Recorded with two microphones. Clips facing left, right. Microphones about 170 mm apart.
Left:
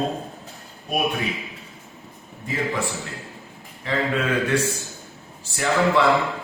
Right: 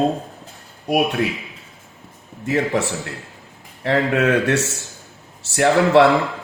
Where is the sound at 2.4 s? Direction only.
75° right (ahead or behind).